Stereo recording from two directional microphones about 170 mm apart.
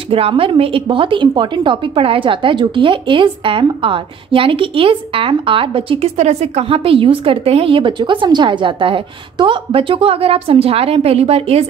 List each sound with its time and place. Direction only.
0.1 s a woman's voice: 35° right (ahead or behind)